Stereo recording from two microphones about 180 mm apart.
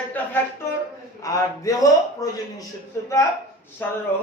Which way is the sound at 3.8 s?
10° left (ahead or behind).